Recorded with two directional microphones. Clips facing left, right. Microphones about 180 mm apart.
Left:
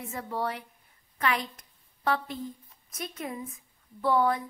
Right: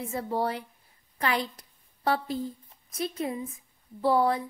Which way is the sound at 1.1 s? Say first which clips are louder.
Right 1 dB; 35° right (ahead or behind).